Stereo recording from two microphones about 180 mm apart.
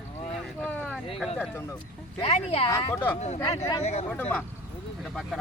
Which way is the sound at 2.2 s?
35° left (ahead or behind).